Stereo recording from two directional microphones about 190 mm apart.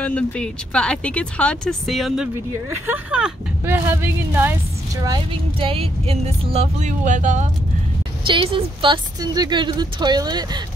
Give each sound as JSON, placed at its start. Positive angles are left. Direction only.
{"t": 0.0, "sound": "speech", "side_deg": 5}
{"t": 8.3, "sound": "a woman's voice", "side_deg": -25}